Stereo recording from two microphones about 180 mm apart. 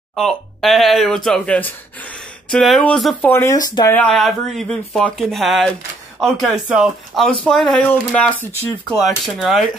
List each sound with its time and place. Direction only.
0.1 s speech: centre (ahead or behind)
3.3 s speech: 15° left (ahead or behind)
3.9 s speech: 5° left (ahead or behind)